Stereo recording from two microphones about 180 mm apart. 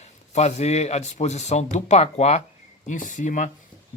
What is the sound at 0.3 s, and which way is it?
Speech, 40° left (ahead or behind).